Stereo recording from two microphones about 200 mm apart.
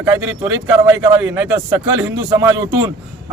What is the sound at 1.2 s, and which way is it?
A man's voice, 10° right (ahead or behind).